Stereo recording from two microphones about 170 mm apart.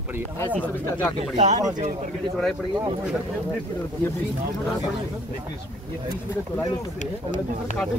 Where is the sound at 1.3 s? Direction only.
45° right (ahead or behind).